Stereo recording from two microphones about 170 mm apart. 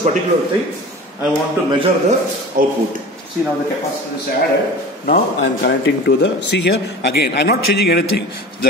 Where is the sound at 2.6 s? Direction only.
55° right (ahead or behind).